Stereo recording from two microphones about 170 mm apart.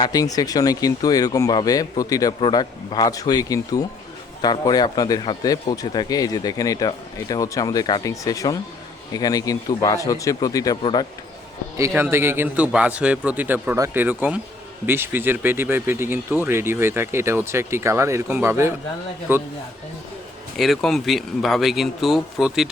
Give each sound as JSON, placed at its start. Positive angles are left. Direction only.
{"t": 0.0, "sound": "speech", "side_deg": 20}
{"t": 11.8, "sound": "speech", "side_deg": -15}
{"t": 20.6, "sound": "speech", "side_deg": 0}